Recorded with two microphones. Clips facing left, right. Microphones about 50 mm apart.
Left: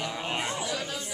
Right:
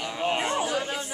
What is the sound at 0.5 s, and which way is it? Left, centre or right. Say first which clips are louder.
Speech: right 5 dB; right.